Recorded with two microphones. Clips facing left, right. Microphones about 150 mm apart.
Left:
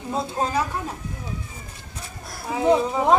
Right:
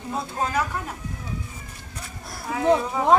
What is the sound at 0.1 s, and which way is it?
Speech, 30° left (ahead or behind).